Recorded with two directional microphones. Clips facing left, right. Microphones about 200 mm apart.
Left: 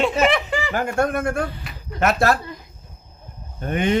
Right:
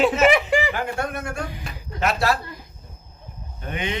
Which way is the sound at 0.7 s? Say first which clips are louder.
Left 5 dB; 45° left (ahead or behind).